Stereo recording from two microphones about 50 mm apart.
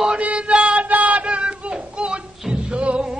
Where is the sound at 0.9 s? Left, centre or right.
Right.